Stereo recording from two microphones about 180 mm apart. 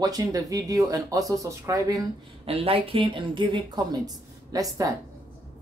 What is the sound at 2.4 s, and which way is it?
Speech, 30° right (ahead or behind).